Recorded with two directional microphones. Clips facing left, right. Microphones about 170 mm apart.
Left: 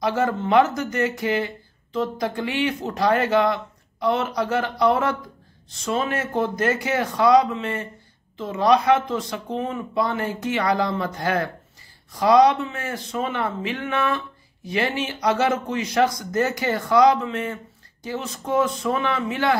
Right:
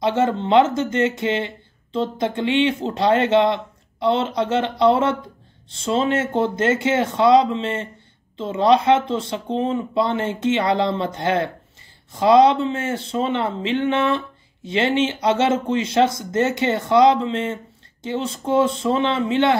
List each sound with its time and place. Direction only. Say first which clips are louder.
0.0 s speech: right 3 dB; 25° right (ahead or behind)